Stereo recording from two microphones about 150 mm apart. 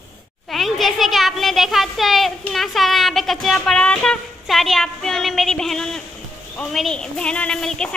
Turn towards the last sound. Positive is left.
turn(degrees=5)  # may be behind; listen again after turning